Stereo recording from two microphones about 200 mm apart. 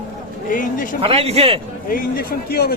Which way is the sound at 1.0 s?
30° right (ahead or behind).